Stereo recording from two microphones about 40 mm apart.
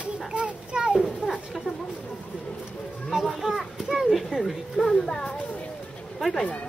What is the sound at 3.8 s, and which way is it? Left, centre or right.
Speech, centre.